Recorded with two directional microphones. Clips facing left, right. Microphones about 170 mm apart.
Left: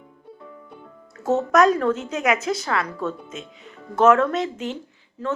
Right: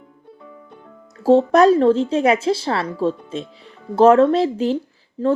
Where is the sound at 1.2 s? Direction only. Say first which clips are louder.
Right 5 dB; 30° right (ahead or behind).